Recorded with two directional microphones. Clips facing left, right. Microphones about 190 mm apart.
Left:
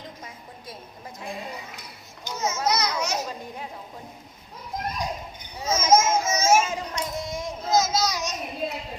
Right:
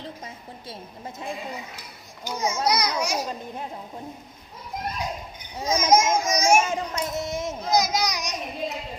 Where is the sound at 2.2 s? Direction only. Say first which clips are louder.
Right 1 dB; 15° right (ahead or behind).